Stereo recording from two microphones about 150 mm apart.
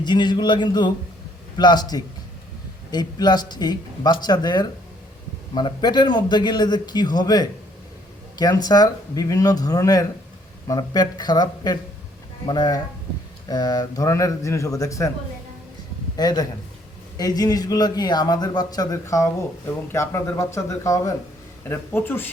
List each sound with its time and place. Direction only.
0.0 s a man's voice: 30° left (ahead or behind)
16.1 s a man's voice: 25° left (ahead or behind)